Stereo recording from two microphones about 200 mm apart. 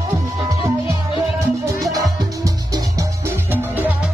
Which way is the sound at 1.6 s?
15° right (ahead or behind).